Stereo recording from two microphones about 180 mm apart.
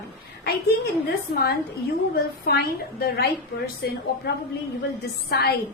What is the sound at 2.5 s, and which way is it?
Speech, 65° left (ahead or behind).